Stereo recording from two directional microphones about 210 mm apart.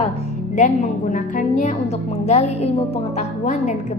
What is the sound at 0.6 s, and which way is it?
A woman's voice, 35° left (ahead or behind).